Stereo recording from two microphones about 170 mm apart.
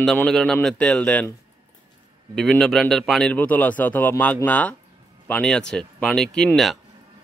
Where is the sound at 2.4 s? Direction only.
5° left (ahead or behind).